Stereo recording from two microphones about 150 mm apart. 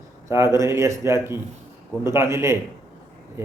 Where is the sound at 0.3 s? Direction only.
20° right (ahead or behind).